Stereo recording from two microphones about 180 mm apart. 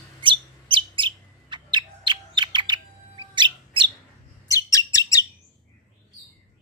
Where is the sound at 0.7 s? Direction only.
25° right (ahead or behind).